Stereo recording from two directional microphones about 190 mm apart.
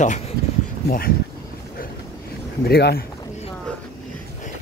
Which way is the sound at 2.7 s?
55° left (ahead or behind).